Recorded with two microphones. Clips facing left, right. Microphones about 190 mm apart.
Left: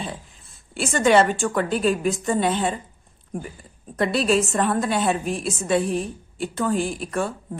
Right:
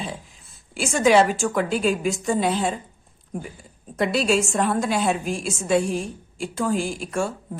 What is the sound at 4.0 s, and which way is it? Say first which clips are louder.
A woman's voice: left 1 dB; centre (ahead or behind).